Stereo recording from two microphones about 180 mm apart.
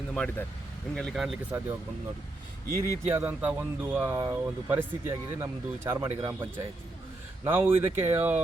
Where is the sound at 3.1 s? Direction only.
10° right (ahead or behind).